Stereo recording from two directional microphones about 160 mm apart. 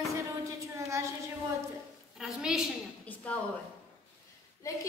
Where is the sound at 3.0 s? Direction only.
10° left (ahead or behind).